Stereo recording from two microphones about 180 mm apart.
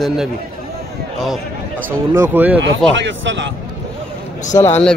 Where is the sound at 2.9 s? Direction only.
85° right.